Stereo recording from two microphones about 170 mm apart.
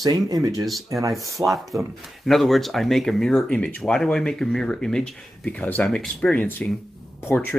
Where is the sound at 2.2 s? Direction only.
Centre (ahead or behind).